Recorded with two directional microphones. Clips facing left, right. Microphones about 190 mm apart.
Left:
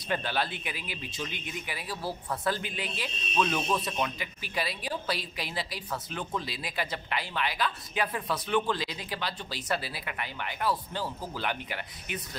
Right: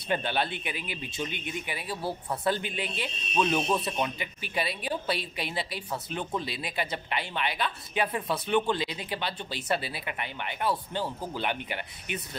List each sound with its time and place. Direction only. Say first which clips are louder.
0.1 s speech: right 2 dB; 25° right (ahead or behind)